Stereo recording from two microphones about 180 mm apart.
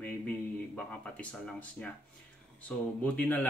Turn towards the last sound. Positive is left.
turn(degrees=10)  # may be behind; listen again after turning